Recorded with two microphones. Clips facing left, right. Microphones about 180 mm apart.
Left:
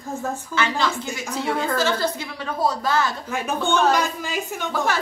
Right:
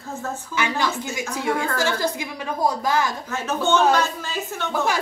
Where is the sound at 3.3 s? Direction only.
15° left (ahead or behind).